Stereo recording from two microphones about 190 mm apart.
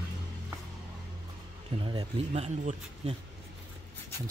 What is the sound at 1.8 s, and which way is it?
Speech, 25° right (ahead or behind).